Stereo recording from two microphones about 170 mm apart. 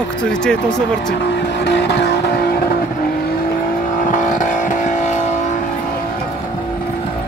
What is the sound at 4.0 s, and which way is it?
Vehicle, 50° left (ahead or behind).